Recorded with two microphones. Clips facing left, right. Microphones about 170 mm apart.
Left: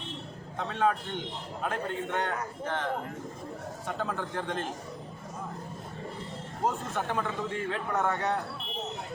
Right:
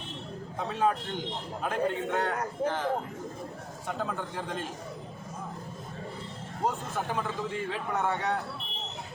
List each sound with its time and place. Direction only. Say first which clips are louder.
0.7 s speech: even; 5° right (ahead or behind)
6.7 s speech: left 1 dB; centre (ahead or behind)